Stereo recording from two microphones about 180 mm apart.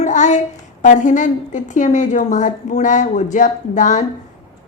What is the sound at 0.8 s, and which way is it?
A woman's voice, 45° left (ahead or behind).